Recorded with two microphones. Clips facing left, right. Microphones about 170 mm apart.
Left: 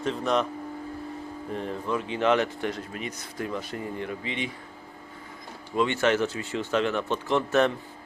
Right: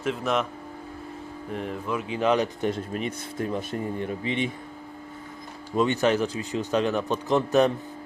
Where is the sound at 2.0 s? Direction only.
30° left (ahead or behind).